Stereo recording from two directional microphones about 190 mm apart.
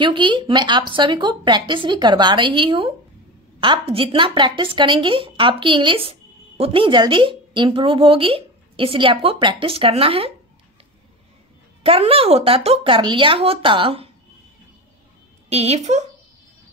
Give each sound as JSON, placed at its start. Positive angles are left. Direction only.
{"t": 0.0, "sound": "a woman's voice", "side_deg": -25}
{"t": 11.8, "sound": "a woman's voice", "side_deg": -30}
{"t": 15.5, "sound": "a woman's voice", "side_deg": -35}